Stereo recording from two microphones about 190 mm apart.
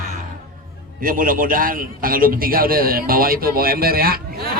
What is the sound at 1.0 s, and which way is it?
A man's voice, 50° right (ahead or behind).